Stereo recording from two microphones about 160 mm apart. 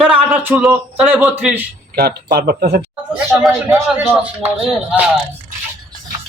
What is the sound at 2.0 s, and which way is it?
Speech, 75° right (ahead or behind).